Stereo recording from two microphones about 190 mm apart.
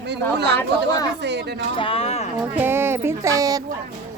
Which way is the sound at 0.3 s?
65° right (ahead or behind).